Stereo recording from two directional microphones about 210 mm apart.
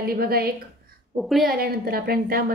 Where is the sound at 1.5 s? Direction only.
45° right (ahead or behind).